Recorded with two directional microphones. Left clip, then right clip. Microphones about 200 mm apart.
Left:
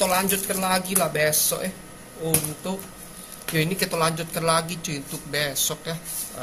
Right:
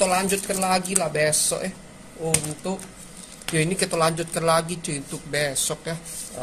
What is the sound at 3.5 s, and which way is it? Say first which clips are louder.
Speech: right 1 dB; 25° right (ahead or behind).